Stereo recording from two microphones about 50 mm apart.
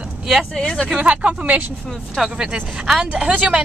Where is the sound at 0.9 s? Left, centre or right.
Right.